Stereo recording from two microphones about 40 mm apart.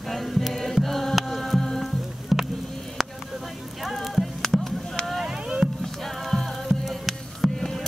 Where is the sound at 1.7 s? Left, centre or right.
Centre.